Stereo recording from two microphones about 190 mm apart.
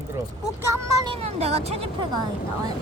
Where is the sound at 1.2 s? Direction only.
35° right (ahead or behind).